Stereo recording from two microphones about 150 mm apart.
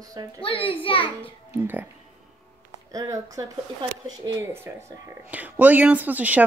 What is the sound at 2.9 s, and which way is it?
Speech, 20° right (ahead or behind).